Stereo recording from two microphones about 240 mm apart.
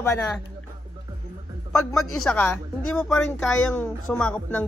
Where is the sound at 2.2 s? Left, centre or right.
Centre.